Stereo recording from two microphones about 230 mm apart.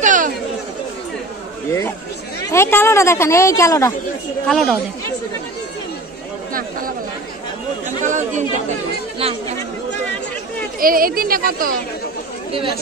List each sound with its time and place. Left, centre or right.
0.0 s chatter: right
1.7 s speech: centre
4.5 s speech: centre
8.0 s speech: right
10.8 s a woman's voice: right